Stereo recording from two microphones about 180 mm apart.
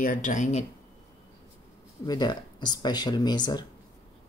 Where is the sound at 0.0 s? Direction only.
45° left (ahead or behind).